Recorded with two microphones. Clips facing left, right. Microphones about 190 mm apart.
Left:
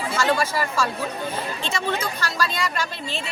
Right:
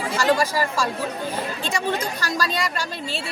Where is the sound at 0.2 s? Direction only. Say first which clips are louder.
Right 2 dB; 35° right (ahead or behind).